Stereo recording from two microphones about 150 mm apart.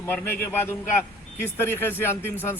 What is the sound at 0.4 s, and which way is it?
A man's voice, 15° left (ahead or behind).